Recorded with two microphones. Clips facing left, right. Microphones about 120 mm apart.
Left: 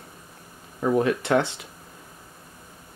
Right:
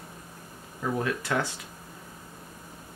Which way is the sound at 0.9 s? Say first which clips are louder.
Left 8 dB; 25° left (ahead or behind).